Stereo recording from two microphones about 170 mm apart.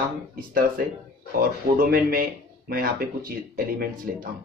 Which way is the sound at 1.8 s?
60° right (ahead or behind).